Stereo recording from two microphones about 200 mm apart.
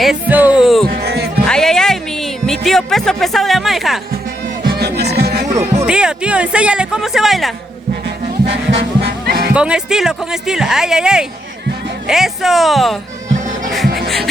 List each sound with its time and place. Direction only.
0.0 s speech: 5° right (ahead or behind)
0.9 s music: 50° right (ahead or behind)
1.5 s music: 5° left (ahead or behind)
4.6 s music: 50° right (ahead or behind)
5.8 s speech: 5° right (ahead or behind)
8.4 s music: 60° right (ahead or behind)
9.5 s speech: 5° right (ahead or behind)